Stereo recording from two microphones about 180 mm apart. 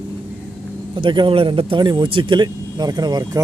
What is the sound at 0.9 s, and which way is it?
Speech, 25° right (ahead or behind).